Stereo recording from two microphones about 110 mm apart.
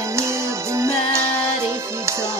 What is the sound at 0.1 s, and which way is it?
Music, 25° right (ahead or behind).